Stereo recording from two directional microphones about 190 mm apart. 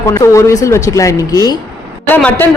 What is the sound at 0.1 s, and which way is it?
Speech, 15° left (ahead or behind).